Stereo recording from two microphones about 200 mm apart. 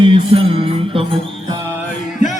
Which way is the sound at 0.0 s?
25° right (ahead or behind).